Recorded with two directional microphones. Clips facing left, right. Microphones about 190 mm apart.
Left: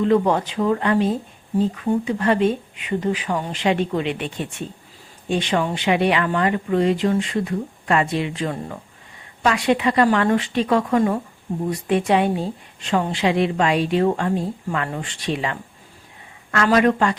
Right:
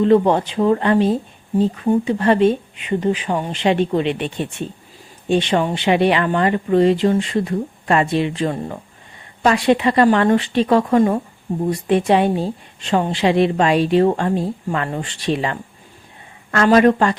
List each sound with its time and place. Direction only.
0.0 s speech: 30° right (ahead or behind)